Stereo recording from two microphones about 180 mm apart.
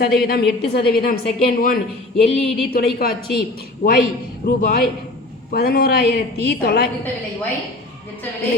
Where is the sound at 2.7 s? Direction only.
60° left (ahead or behind).